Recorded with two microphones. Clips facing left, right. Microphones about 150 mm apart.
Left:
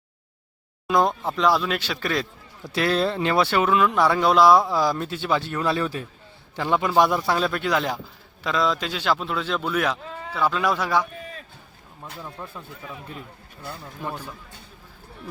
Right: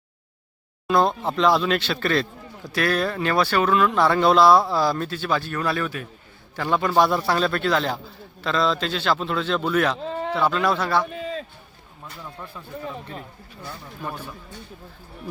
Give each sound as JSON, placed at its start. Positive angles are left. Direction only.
{"t": 0.9, "sound": "speech", "side_deg": 15}
{"t": 2.7, "sound": "speech", "side_deg": 20}
{"t": 6.6, "sound": "speech", "side_deg": 15}
{"t": 10.0, "sound": "a sound", "side_deg": -70}
{"t": 10.3, "sound": "speech", "side_deg": 5}
{"t": 14.0, "sound": "speech", "side_deg": 20}